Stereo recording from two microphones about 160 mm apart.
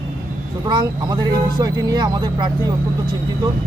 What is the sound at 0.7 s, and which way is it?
Speech, 30° right (ahead or behind).